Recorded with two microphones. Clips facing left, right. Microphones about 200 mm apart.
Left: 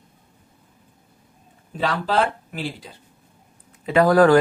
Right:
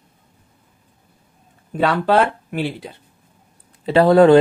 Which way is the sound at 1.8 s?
60° right (ahead or behind).